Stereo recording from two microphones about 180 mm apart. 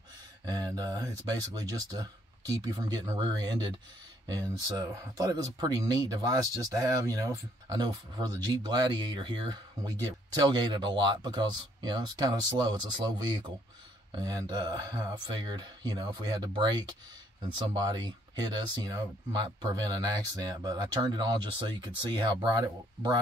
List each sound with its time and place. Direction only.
0.5 s speech: 20° right (ahead or behind)